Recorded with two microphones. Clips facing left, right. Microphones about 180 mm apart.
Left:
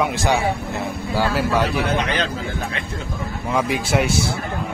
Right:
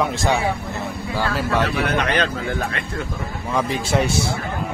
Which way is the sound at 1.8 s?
60° right (ahead or behind).